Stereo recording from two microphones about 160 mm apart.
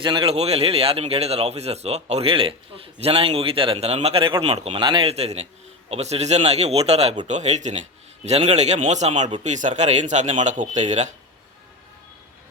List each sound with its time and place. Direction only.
0.0 s a man's voice: 30° right (ahead or behind); by 11.1 s 45° right (ahead or behind)